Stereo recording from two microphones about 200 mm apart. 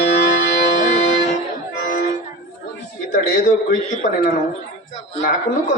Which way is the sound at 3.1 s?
40° left (ahead or behind).